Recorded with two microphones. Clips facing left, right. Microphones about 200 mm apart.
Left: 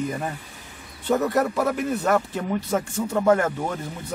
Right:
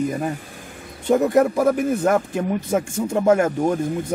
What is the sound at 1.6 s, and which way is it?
Speech, 45° right (ahead or behind).